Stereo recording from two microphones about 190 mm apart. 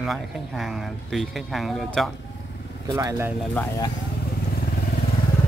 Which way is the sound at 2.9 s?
15° right (ahead or behind).